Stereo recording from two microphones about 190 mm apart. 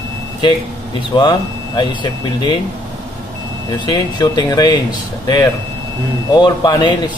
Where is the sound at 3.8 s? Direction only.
25° left (ahead or behind).